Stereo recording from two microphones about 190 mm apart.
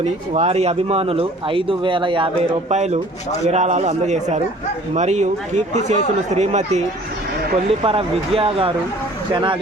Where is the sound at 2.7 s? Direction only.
35° right (ahead or behind).